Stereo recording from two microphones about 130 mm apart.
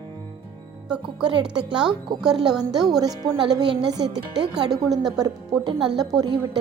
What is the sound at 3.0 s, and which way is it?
A woman's voice, 30° right (ahead or behind).